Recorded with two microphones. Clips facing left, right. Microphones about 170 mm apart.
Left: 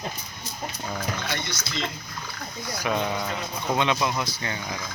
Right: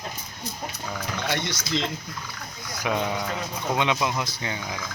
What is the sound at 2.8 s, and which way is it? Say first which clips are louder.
Speech: right 1 dB; 10° right (ahead or behind).